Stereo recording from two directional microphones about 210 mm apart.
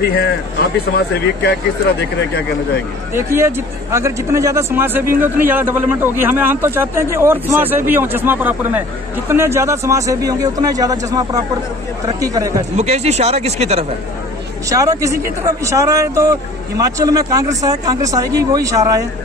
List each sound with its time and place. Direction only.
0.0 s speech: 50° left (ahead or behind)
3.2 s speech: 10° right (ahead or behind)
12.7 s speech: 30° right (ahead or behind)
14.7 s speech: 15° right (ahead or behind)